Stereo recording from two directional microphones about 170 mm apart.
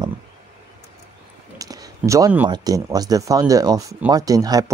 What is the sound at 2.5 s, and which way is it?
Speech, 20° right (ahead or behind).